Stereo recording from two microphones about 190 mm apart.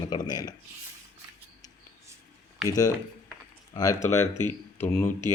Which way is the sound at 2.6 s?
20° left (ahead or behind).